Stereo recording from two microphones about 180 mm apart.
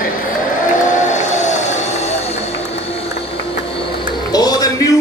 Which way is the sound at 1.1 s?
40° left (ahead or behind).